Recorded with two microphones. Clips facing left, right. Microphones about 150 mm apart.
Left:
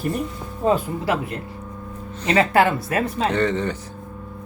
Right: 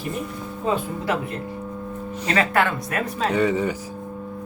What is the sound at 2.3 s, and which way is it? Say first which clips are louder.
Speech: left 4 dB; 25° left (ahead or behind).